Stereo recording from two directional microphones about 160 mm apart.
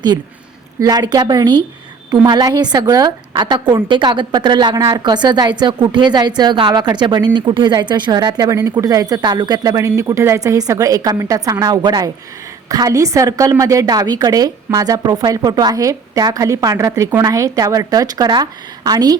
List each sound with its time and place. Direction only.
0.8 s a woman's voice: 25° right (ahead or behind)